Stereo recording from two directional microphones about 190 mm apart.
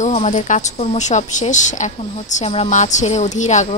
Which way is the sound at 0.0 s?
35° left (ahead or behind).